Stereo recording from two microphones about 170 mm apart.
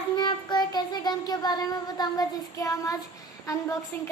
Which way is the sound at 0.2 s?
25° left (ahead or behind).